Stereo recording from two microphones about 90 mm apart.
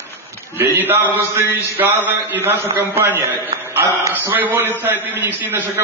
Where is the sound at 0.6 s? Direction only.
25° right (ahead or behind).